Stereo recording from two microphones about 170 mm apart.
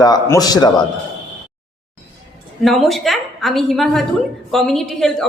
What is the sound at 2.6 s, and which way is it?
A woman's voice, centre (ahead or behind).